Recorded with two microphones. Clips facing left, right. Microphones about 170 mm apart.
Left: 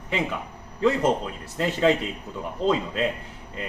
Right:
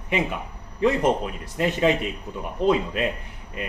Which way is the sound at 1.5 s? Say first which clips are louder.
Even; 15° right (ahead or behind).